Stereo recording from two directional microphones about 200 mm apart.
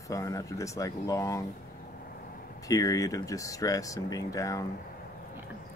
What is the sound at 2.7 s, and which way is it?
Speech, 15° left (ahead or behind).